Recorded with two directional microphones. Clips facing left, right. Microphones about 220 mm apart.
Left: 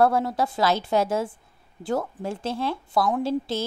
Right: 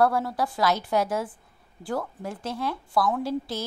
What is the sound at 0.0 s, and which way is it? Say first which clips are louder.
Speech: left 2 dB; 25° left (ahead or behind).